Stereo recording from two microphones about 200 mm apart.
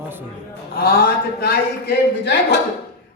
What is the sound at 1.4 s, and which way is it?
Speech, 55° left (ahead or behind).